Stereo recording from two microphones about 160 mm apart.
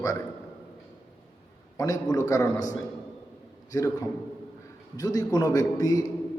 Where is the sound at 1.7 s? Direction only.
25° left (ahead or behind).